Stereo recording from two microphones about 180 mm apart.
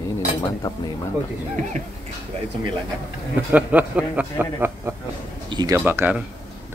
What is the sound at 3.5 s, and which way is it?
A man's voice, 10° right (ahead or behind).